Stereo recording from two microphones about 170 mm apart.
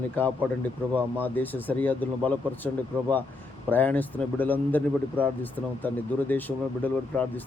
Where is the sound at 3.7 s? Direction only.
10° left (ahead or behind).